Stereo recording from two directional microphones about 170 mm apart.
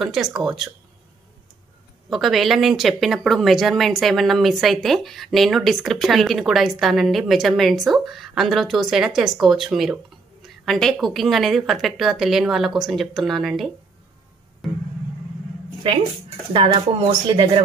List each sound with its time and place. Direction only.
0.0 s speech: 5° right (ahead or behind)
2.0 s speech: centre (ahead or behind)
14.6 s music: centre (ahead or behind)
16.5 s speech: 30° right (ahead or behind)